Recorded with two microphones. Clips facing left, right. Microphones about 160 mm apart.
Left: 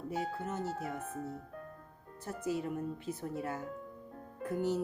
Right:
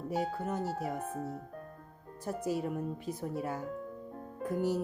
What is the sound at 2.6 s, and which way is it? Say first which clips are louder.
Speech: right 2 dB; 15° right (ahead or behind).